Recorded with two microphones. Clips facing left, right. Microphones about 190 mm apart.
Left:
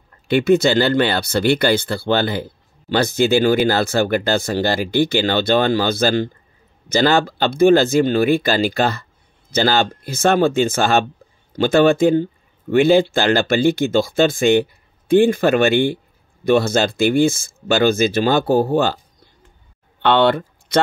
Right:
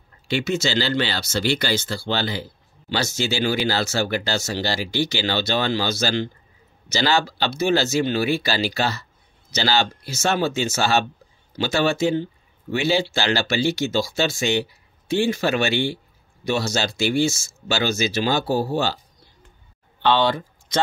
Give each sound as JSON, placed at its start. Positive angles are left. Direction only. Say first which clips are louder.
{"t": 0.3, "sound": "speech", "louder": "left 9 dB", "side_deg": 55}